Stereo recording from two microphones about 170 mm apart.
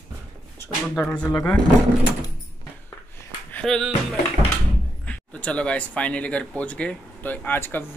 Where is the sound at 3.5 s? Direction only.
5° left (ahead or behind).